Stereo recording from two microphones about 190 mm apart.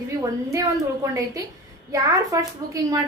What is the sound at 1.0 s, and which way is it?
A woman's voice, 15° right (ahead or behind).